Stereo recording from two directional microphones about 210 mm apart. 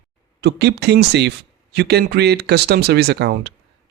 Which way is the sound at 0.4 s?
50° right (ahead or behind).